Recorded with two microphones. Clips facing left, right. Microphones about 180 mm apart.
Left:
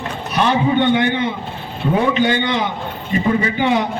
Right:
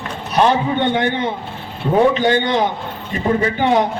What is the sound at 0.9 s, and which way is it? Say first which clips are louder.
A man's voice: left 1 dB; 40° right (ahead or behind).